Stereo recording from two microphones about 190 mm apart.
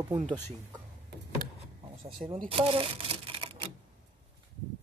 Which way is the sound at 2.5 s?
30° right (ahead or behind).